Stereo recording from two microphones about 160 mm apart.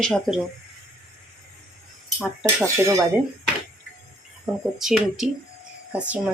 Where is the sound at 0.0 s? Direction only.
5° left (ahead or behind).